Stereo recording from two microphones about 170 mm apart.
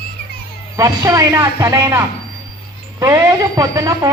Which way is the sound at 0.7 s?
20° right (ahead or behind).